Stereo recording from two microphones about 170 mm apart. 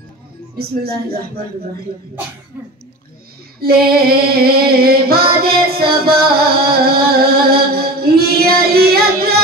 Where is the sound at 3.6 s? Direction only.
65° right (ahead or behind).